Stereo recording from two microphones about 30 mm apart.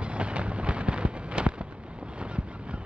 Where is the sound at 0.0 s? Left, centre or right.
Right.